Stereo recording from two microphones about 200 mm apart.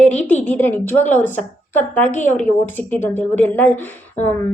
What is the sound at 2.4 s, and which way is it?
A woman's voice, 10° left (ahead or behind).